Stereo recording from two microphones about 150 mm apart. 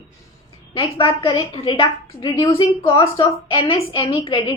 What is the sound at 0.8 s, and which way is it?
A woman's voice, 40° left (ahead or behind).